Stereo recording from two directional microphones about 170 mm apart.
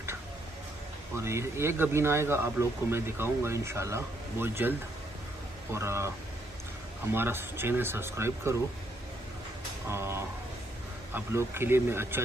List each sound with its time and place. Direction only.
1.2 s speech: 15° right (ahead or behind)
9.8 s speech: 15° right (ahead or behind)